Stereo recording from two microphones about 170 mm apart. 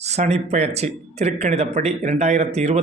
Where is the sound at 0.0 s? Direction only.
40° right (ahead or behind).